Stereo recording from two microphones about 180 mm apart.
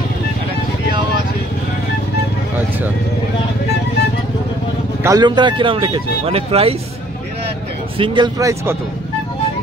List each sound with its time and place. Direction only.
5.0 s speech: 20° right (ahead or behind)
8.0 s speech: 25° right (ahead or behind)